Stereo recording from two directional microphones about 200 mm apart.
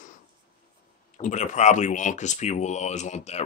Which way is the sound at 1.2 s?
35° left (ahead or behind).